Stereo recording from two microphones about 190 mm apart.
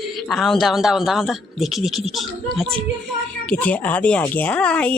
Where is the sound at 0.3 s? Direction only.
Centre (ahead or behind).